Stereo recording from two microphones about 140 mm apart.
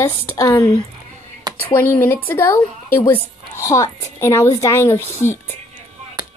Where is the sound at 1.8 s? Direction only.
15° left (ahead or behind).